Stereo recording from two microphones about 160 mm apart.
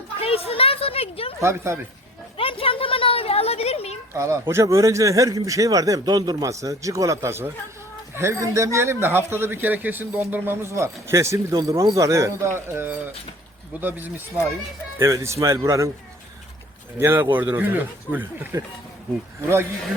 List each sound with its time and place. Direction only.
0.2 s speech: 35° left (ahead or behind)
1.4 s speech: 15° right (ahead or behind)
2.4 s a sound: 35° left (ahead or behind)
4.1 s a man's voice: 15° right (ahead or behind)
17.0 s speech: 15° right (ahead or behind)